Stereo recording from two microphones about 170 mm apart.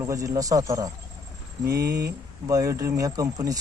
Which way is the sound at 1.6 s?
65° right (ahead or behind).